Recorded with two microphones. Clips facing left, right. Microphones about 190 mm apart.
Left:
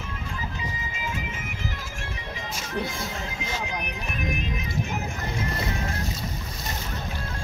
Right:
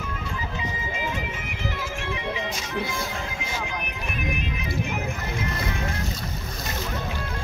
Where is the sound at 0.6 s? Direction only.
45° left (ahead or behind).